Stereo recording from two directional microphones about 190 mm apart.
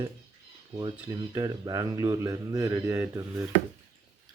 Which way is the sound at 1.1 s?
20° right (ahead or behind).